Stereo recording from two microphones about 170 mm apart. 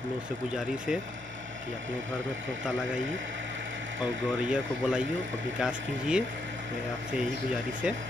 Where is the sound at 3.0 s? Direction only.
90° right.